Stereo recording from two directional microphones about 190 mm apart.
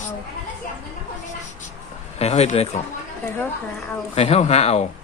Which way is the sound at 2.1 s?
35° left (ahead or behind).